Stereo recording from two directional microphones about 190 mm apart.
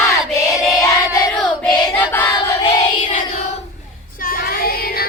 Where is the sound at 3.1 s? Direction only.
40° left (ahead or behind).